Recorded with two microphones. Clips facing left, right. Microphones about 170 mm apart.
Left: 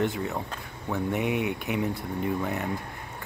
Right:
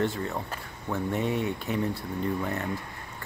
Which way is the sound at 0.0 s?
15° left (ahead or behind).